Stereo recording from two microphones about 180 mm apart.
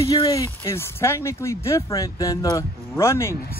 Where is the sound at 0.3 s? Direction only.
15° left (ahead or behind).